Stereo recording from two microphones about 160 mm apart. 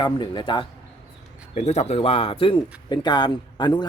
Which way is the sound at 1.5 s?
45° left (ahead or behind).